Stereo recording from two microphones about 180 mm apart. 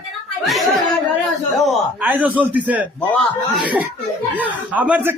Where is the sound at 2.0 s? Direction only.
10° right (ahead or behind).